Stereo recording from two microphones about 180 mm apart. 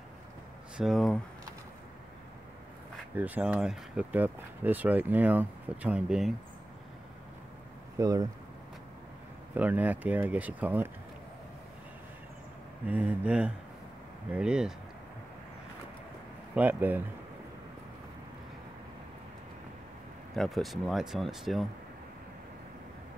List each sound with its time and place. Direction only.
0.7 s speech: centre (ahead or behind)
3.2 s speech: 10° right (ahead or behind)
8.0 s speech: 20° right (ahead or behind)
9.6 s speech: 10° right (ahead or behind)
12.8 s speech: 5° right (ahead or behind)
16.5 s speech: 10° right (ahead or behind)
20.3 s speech: centre (ahead or behind)